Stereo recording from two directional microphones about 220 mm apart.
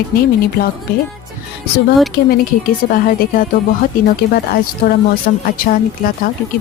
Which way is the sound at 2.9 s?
40° left (ahead or behind).